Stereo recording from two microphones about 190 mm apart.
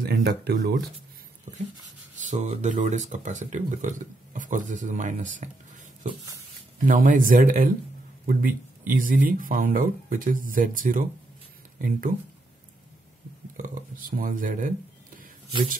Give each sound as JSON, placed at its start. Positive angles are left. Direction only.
{"t": 0.0, "sound": "speech", "side_deg": -60}
{"t": 2.1, "sound": "speech", "side_deg": -40}
{"t": 6.8, "sound": "speech", "side_deg": -45}
{"t": 13.6, "sound": "speech", "side_deg": -45}